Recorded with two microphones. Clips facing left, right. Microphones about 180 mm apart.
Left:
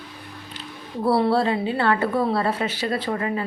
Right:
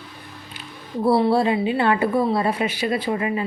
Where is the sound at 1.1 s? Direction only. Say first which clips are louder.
Right 2 dB; 10° right (ahead or behind).